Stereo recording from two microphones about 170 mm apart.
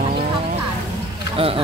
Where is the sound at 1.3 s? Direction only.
35° right (ahead or behind).